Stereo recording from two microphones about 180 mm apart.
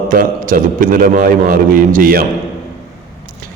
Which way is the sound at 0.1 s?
50° right (ahead or behind).